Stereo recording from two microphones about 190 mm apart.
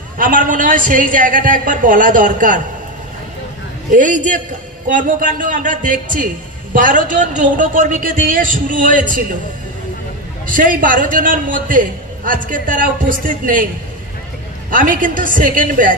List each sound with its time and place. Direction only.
0.2 s a man's voice: 45° right (ahead or behind)
3.9 s a man's voice: 45° right (ahead or behind)
10.4 s a man's voice: 45° right (ahead or behind)
14.7 s a man's voice: 45° right (ahead or behind)